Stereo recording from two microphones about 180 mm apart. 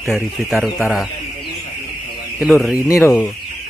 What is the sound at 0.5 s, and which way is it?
Speech, 5° right (ahead or behind).